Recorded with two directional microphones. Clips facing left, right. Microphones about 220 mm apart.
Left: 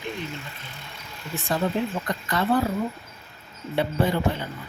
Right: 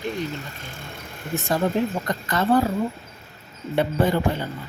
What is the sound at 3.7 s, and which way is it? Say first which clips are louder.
Speech: right 3 dB; 45° right (ahead or behind).